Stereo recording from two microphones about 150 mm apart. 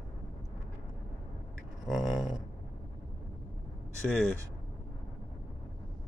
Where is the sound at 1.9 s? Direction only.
Centre (ahead or behind).